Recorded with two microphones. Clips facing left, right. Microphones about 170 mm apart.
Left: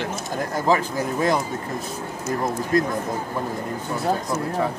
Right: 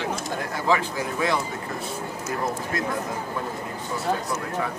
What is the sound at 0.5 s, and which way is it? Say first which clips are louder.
Speech: left 3 dB; 40° left (ahead or behind).